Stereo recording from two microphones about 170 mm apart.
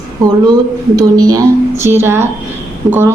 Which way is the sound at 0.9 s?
20° right (ahead or behind).